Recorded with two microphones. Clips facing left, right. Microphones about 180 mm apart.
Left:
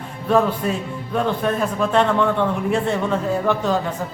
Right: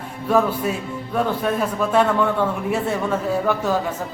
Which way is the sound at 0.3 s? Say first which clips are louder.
Left 1 dB; 5° right (ahead or behind).